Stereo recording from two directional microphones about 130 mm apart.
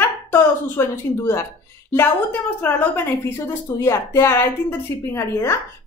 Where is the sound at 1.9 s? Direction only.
15° left (ahead or behind).